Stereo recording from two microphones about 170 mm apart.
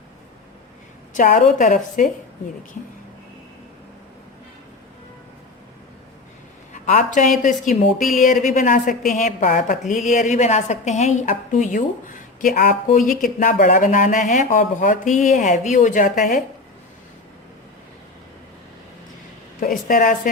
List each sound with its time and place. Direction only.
1.1 s a woman's voice: 50° left (ahead or behind)
6.8 s a woman's voice: 50° left (ahead or behind)
19.5 s a woman's voice: 55° left (ahead or behind)